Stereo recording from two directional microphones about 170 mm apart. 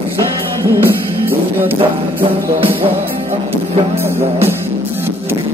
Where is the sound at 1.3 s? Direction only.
10° right (ahead or behind).